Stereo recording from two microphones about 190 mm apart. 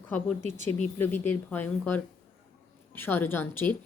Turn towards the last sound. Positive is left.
turn(degrees=10)  # may be behind; listen again after turning